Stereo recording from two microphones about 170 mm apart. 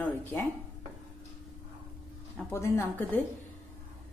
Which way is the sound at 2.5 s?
15° left (ahead or behind).